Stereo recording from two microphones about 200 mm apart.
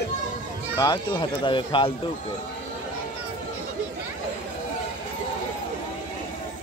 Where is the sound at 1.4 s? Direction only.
25° left (ahead or behind).